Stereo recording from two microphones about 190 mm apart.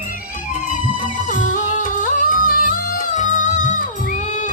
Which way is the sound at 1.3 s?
40° left (ahead or behind).